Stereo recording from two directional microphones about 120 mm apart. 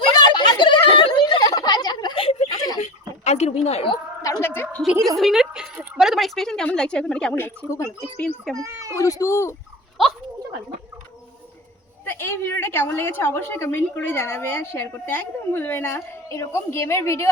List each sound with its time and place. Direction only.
0.0 s a sound: 40° left (ahead or behind)
2.5 s a sound: 35° left (ahead or behind)
3.2 s a woman's voice: 65° left (ahead or behind)
4.2 s a woman's voice: 25° left (ahead or behind)
5.1 s a woman's voice: centre (ahead or behind)
7.3 s a woman's voice: 20° left (ahead or behind)
8.5 s a child's voice: 25° right (ahead or behind)
9.0 s a woman's voice: 30° left (ahead or behind)
12.0 s a woman's voice: 20° left (ahead or behind)